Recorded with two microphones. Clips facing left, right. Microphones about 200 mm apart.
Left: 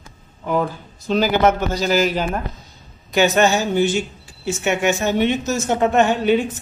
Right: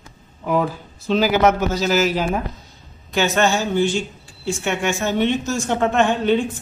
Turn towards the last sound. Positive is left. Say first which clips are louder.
# left 1 dB
turn(degrees=5)  # may be behind; listen again after turning